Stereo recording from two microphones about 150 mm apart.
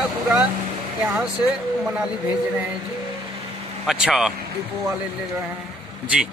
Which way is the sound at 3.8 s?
5° right (ahead or behind).